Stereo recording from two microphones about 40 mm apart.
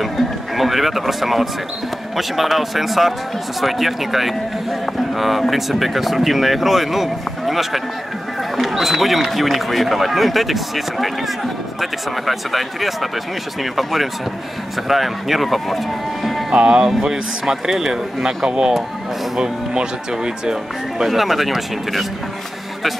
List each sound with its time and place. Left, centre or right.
0.0 s a man's voice: centre
16.5 s speech: right
21.0 s speech: centre